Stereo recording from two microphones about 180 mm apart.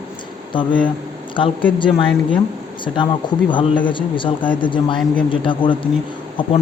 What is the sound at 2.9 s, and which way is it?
Speech, 25° left (ahead or behind).